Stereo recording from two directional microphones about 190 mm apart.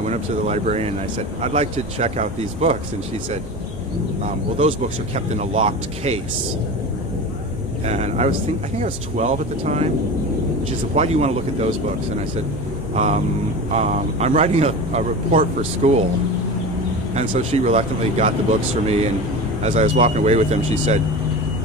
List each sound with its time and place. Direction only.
0.0 s speech: 35° right (ahead or behind)
4.6 s speech: 35° right (ahead or behind)
7.8 s speech: 35° right (ahead or behind)
11.0 s speech: 35° right (ahead or behind)
12.9 s speech: 35° right (ahead or behind)
17.1 s speech: 35° right (ahead or behind)
19.6 s speech: 35° right (ahead or behind)